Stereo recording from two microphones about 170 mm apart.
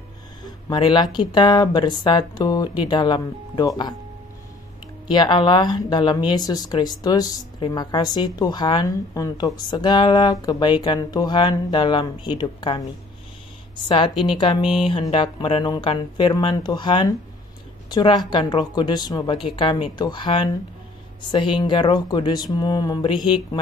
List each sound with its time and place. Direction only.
0.7 s speech: 25° left (ahead or behind)
5.1 s speech: 25° left (ahead or behind)
13.8 s speech: 30° left (ahead or behind)
14.1 s a woman's voice: 5° right (ahead or behind)
14.4 s a woman's voice: 30° left (ahead or behind)